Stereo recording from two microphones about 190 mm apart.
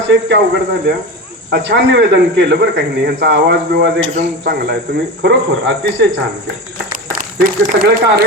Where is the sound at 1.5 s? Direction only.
65° right (ahead or behind).